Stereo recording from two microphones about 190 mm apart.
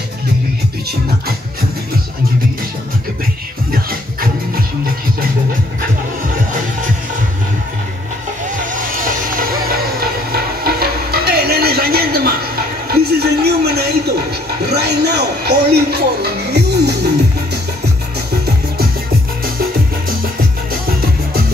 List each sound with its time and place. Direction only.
3.7 s music: 50° right (ahead or behind)
9.0 s vehicle: 45° right (ahead or behind)
10.3 s music: 50° right (ahead or behind)
12.9 s a sound: 55° right (ahead or behind)